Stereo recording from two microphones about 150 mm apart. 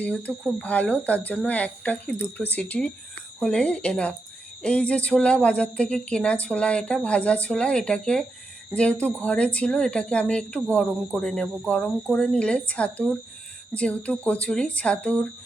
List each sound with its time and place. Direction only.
0.0 s speech: 10° left (ahead or behind)